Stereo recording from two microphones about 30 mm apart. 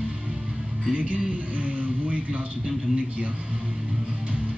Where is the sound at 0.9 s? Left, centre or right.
Right.